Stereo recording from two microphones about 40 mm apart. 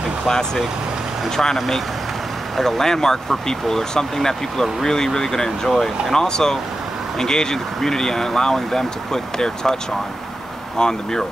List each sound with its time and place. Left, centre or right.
1.3 s speech: centre
10.8 s speech: centre